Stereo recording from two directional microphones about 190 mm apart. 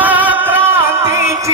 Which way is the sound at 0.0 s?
10° right (ahead or behind).